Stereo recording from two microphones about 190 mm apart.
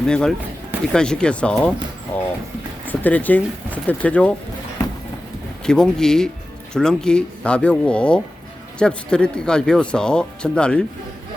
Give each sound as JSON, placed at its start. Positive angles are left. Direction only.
{"t": 0.0, "sound": "speech", "side_deg": 5}
{"t": 5.6, "sound": "speech", "side_deg": 5}